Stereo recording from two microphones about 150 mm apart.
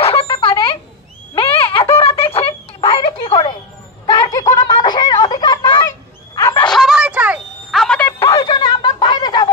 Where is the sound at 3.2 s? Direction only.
30° left (ahead or behind).